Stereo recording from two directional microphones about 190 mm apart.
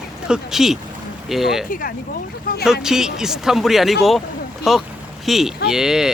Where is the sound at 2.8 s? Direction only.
5° right (ahead or behind).